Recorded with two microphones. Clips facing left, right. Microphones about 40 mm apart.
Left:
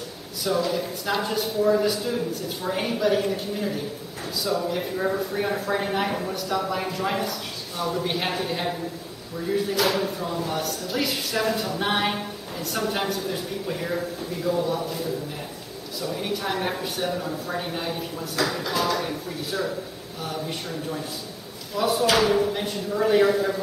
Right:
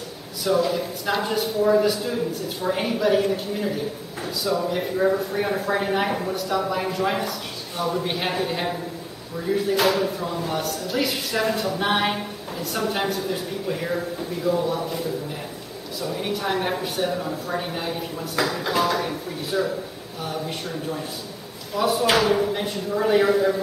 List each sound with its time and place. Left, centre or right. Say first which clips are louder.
0.5 s speech: right 3 dB; centre
16.0 s speech: right 1 dB; centre
18.4 s speech: right 3 dB; right